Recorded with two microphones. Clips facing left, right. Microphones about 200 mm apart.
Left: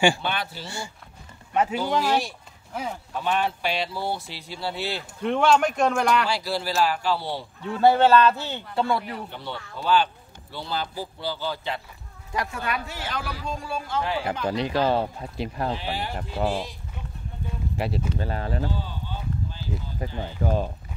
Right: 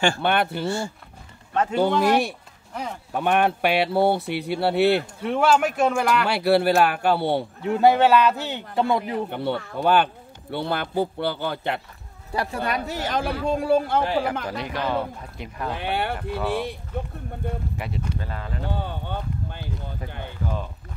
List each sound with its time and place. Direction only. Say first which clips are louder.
0.2 s speech: right 8 dB; 60° right (ahead or behind)
1.5 s speech: even; 10° left (ahead or behind)
2.0 s speech: right 4 dB; 60° right (ahead or behind)
2.7 s speech: even; 5° left (ahead or behind)
3.2 s speech: right 5 dB; 60° right (ahead or behind)
5.2 s speech: left 2 dB; 5° right (ahead or behind)
6.2 s speech: right 8 dB; 60° right (ahead or behind)
7.6 s speech: right 1 dB; 15° right (ahead or behind)
9.3 s speech: right 9 dB; 55° right (ahead or behind)
12.3 s speech: right 3 dB; 35° right (ahead or behind); by 14.0 s 60° right (ahead or behind)
14.4 s speech: left 4 dB; 30° left (ahead or behind)
15.7 s speech: right 3 dB; 60° right (ahead or behind)
17.7 s speech: left 3 dB; 30° left (ahead or behind)
18.6 s speech: right 1 dB; 60° right (ahead or behind)